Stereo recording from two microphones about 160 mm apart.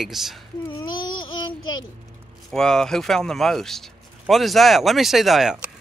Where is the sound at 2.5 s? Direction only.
5° left (ahead or behind).